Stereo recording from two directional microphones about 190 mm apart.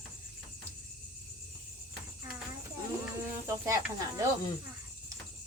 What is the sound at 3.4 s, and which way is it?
Speech, 15° right (ahead or behind).